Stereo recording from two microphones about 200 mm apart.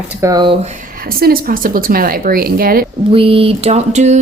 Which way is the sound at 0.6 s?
40° right (ahead or behind).